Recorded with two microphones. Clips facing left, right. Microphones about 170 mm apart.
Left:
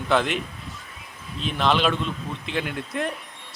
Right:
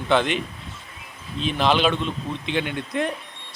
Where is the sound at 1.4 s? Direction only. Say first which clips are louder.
Right 2 dB; centre (ahead or behind).